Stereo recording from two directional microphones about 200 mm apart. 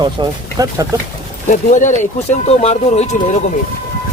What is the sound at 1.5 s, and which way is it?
Speech, 40° left (ahead or behind).